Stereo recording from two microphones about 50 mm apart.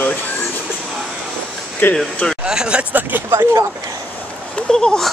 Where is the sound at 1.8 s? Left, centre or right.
Left.